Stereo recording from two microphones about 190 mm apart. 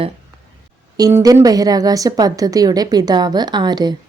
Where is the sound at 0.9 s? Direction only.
20° right (ahead or behind).